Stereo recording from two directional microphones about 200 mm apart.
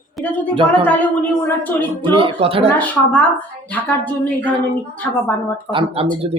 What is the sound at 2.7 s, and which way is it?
A woman's voice, 10° left (ahead or behind).